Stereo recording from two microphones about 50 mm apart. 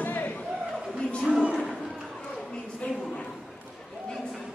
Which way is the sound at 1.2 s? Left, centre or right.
Centre.